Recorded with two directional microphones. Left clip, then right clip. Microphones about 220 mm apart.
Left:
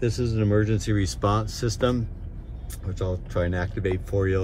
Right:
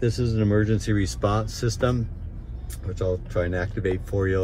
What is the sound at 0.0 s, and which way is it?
Speech, 15° left (ahead or behind).